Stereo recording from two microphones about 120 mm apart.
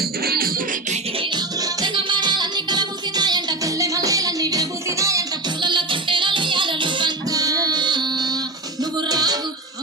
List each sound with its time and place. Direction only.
1.2 s music: 40° right (ahead or behind)
5.5 s music: 40° right (ahead or behind)